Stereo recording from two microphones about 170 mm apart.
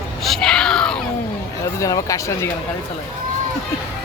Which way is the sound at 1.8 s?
20° left (ahead or behind).